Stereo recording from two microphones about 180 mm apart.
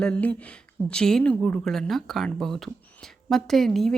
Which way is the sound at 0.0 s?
5° left (ahead or behind).